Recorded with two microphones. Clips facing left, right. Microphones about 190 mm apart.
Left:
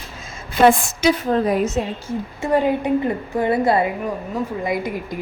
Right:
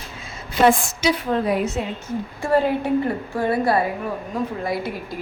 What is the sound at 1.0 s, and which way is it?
Speech, 50° left (ahead or behind).